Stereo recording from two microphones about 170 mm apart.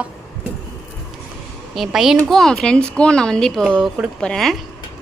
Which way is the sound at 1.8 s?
Centre (ahead or behind).